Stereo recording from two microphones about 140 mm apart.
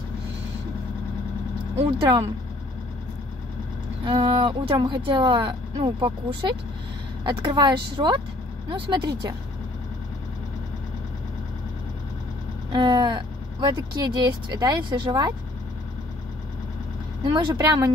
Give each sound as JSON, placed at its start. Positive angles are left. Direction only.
{"t": 1.8, "sound": "speech", "side_deg": -35}
{"t": 4.0, "sound": "speech", "side_deg": -35}
{"t": 7.2, "sound": "speech", "side_deg": -35}
{"t": 12.7, "sound": "speech", "side_deg": -30}
{"t": 17.2, "sound": "speech", "side_deg": -30}